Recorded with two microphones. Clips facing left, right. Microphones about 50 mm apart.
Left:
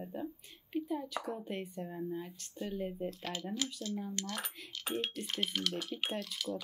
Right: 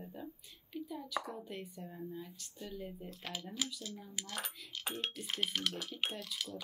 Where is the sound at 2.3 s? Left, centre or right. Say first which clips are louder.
Left 3 dB; left.